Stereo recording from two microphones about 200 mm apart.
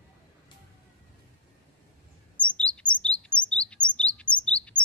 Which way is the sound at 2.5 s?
5° left (ahead or behind).